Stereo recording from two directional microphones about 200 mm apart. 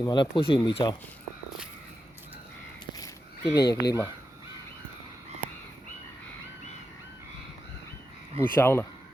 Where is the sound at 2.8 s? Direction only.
20° left (ahead or behind).